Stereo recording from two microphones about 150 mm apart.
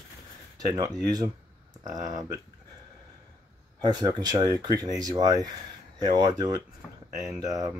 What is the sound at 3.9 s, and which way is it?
Speech, 25° right (ahead or behind).